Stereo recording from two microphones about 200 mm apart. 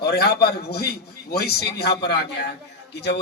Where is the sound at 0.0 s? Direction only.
55° left (ahead or behind).